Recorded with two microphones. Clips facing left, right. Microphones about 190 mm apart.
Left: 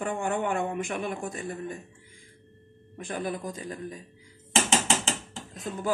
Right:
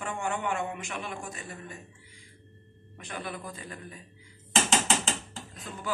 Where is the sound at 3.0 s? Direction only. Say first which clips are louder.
Left 6 dB; 45° left (ahead or behind).